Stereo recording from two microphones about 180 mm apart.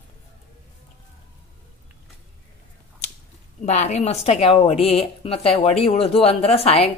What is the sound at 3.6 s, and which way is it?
A woman's voice, 40° left (ahead or behind).